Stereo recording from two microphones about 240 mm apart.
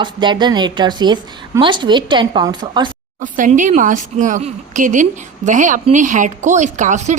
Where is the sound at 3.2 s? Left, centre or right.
Right.